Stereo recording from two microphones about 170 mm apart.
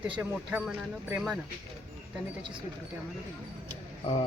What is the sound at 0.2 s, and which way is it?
Speech, 10° right (ahead or behind).